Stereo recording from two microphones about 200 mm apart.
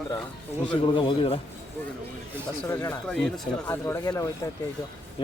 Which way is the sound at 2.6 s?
10° left (ahead or behind).